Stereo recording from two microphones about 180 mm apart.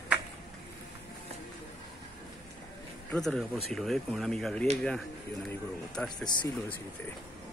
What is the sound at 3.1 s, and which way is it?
Speech, 5° left (ahead or behind).